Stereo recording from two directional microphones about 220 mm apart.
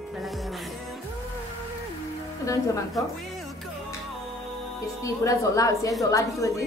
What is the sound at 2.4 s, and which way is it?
Speech, 15° left (ahead or behind).